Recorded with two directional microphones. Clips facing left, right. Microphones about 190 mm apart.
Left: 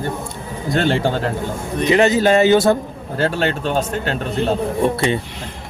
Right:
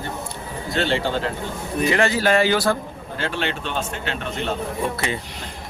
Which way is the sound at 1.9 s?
20° left (ahead or behind).